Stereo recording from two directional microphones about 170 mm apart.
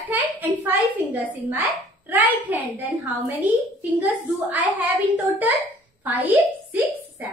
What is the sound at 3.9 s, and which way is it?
A woman's voice, 10° right (ahead or behind).